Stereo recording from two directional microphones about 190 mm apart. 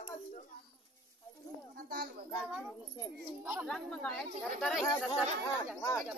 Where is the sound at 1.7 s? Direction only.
55° right (ahead or behind).